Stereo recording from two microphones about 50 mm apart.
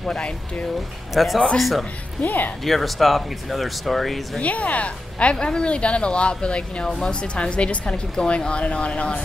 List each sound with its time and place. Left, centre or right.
0.0 s speech: centre
1.1 s speech: centre
2.2 s speech: left
2.6 s speech: centre
4.4 s speech: left